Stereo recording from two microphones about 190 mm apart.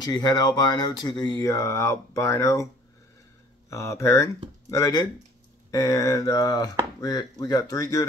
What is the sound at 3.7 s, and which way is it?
Speech, 15° left (ahead or behind).